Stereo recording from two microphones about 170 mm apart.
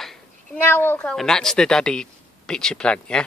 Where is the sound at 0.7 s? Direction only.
10° left (ahead or behind).